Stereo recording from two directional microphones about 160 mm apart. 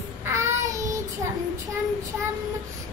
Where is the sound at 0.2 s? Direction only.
20° right (ahead or behind).